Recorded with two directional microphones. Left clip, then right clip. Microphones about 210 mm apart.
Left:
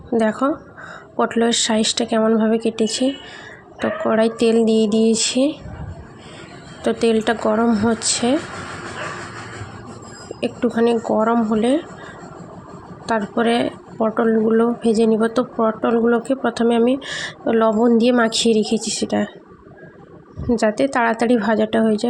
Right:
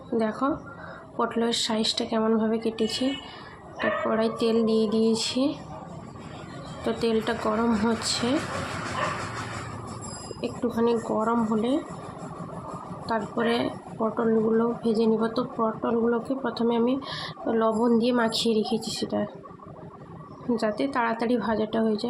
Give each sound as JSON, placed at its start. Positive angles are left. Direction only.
{"t": 0.1, "sound": "speech", "side_deg": 30}
{"t": 6.8, "sound": "speech", "side_deg": 30}
{"t": 10.4, "sound": "speech", "side_deg": 30}
{"t": 13.1, "sound": "speech", "side_deg": 30}
{"t": 20.6, "sound": "speech", "side_deg": 30}